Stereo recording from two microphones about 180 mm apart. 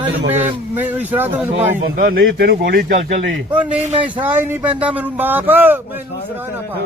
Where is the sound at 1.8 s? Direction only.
55° right (ahead or behind).